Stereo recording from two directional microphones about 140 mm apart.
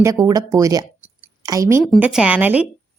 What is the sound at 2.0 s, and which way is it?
Speech, 5° right (ahead or behind).